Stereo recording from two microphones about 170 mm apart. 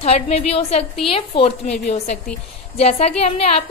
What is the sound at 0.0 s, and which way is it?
A woman's voice, 35° left (ahead or behind).